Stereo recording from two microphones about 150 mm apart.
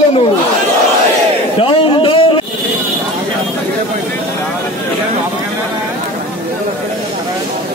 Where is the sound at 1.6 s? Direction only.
35° left (ahead or behind).